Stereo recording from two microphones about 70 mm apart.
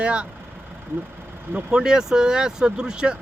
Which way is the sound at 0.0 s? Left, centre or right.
Centre.